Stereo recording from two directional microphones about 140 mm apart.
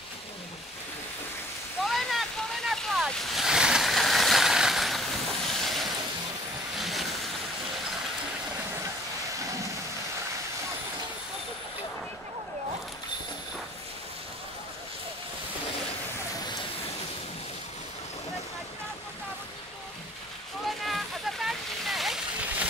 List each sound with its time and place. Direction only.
1.9 s waves: centre (ahead or behind)
6.8 s vehicle: centre (ahead or behind)
9.4 s thunder: 20° right (ahead or behind)
20.6 s a sound: centre (ahead or behind)